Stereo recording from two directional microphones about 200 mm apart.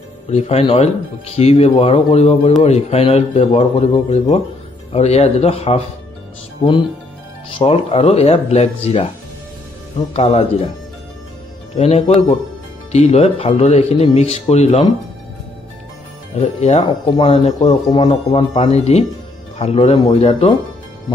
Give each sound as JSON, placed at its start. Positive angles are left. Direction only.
{"t": 0.3, "sound": "speech", "side_deg": 30}
{"t": 10.1, "sound": "speech", "side_deg": 30}
{"t": 11.7, "sound": "speech", "side_deg": 30}
{"t": 16.3, "sound": "speech", "side_deg": 30}